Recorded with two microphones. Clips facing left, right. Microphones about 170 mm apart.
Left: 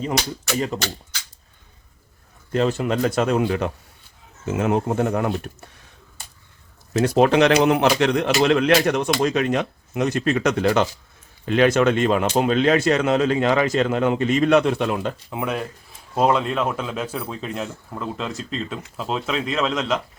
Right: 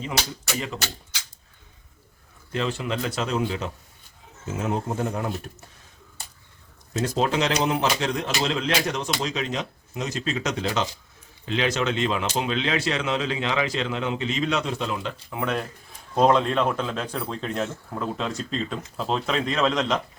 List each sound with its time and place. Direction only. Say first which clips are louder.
2.5 s a man's voice: left 7 dB; 45° left (ahead or behind); by 5.6 s 65° left (ahead or behind)
7.0 s a man's voice: left 8 dB; 65° left (ahead or behind)
15.3 s a man's voice: right 3 dB; 15° left (ahead or behind)